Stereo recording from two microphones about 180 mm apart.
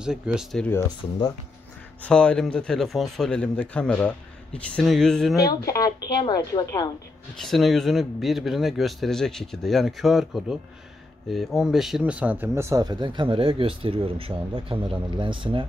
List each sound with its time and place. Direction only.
0.0 s a man's voice: 5° right (ahead or behind)
0.7 s speech: 15° left (ahead or behind)
2.0 s a man's voice: 5° left (ahead or behind)
5.3 s speech: 20° left (ahead or behind)
7.3 s a man's voice: centre (ahead or behind); by 15.6 s 25° right (ahead or behind)